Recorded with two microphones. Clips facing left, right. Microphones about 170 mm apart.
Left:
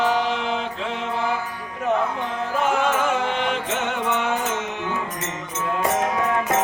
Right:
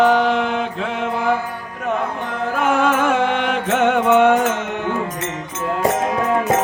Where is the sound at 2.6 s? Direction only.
60° right (ahead or behind).